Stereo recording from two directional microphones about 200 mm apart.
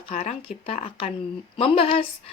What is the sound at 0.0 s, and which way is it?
A woman's voice, 30° left (ahead or behind).